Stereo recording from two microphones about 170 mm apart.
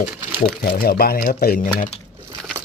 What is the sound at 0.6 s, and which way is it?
Speech, 60° left (ahead or behind).